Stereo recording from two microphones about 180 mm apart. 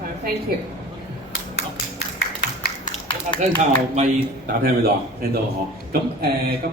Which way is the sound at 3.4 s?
40° right (ahead or behind).